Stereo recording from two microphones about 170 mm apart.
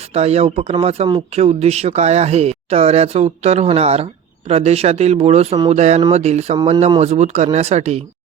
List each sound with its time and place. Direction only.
0.1 s speech: 40° right (ahead or behind)